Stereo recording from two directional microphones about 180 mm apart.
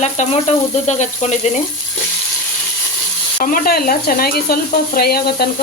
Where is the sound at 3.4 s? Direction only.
55° left (ahead or behind).